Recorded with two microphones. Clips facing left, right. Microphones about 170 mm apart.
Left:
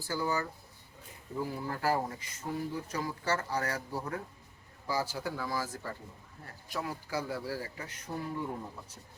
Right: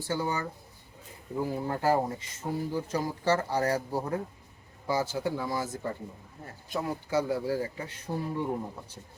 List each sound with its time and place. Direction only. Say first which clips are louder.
0.0 s speech: right 2 dB; 25° right (ahead or behind)